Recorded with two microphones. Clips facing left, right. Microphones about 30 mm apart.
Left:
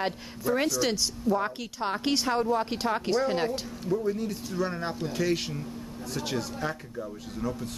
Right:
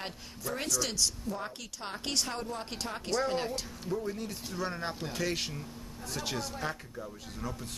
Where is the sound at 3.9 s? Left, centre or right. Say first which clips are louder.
Left 7 dB; centre.